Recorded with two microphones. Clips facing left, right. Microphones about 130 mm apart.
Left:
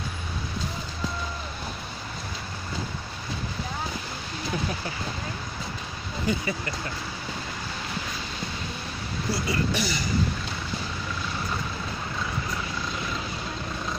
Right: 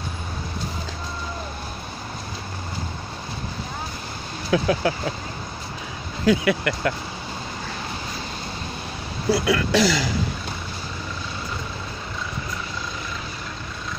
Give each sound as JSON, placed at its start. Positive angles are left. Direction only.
{"t": 4.5, "sound": "speech", "side_deg": -90}
{"t": 6.2, "sound": "speech", "side_deg": -85}
{"t": 9.3, "sound": "speech", "side_deg": -80}